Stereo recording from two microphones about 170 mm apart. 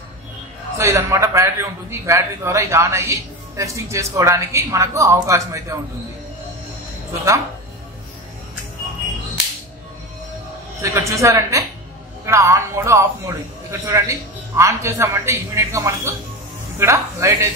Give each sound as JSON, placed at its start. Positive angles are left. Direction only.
{"t": 0.7, "sound": "a man's voice", "side_deg": -15}
{"t": 10.8, "sound": "a man's voice", "side_deg": -15}